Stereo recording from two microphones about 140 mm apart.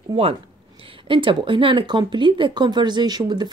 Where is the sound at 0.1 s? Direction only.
40° right (ahead or behind).